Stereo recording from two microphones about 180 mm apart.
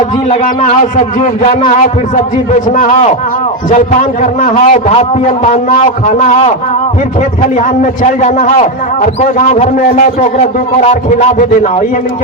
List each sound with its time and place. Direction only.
1.2 s a man's voice: 40° left (ahead or behind)
4.2 s a man's voice: 45° left (ahead or behind)
8.2 s a man's voice: 40° left (ahead or behind)